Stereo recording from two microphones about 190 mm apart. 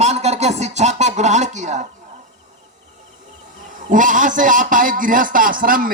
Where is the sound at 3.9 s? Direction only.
45° right (ahead or behind).